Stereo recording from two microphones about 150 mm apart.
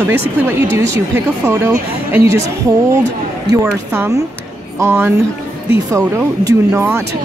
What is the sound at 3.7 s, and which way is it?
Speech, 20° right (ahead or behind).